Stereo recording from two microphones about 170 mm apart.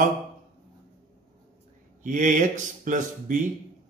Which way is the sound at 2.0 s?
50° right (ahead or behind).